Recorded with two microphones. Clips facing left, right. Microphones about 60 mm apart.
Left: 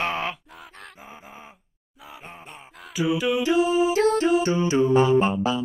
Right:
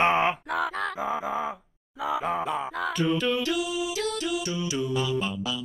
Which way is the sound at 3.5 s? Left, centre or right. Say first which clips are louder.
Left 9 dB; left.